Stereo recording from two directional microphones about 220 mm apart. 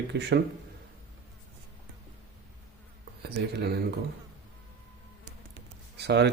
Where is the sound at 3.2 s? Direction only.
45° right (ahead or behind).